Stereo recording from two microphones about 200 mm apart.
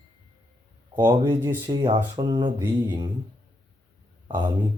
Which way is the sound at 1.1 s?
25° right (ahead or behind).